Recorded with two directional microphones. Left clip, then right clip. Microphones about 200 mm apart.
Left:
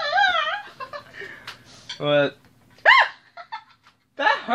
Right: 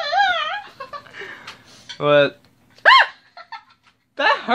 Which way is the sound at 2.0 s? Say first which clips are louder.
Right 5 dB; 35° right (ahead or behind).